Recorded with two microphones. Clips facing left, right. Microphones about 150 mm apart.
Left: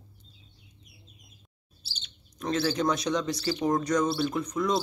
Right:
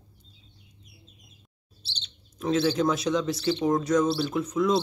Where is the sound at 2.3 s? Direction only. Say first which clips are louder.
Right 4 dB; centre (ahead or behind).